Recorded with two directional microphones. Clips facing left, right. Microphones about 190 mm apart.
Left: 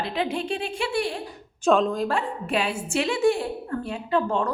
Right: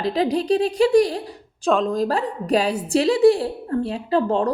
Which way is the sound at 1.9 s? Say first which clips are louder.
Right 4 dB; 35° right (ahead or behind).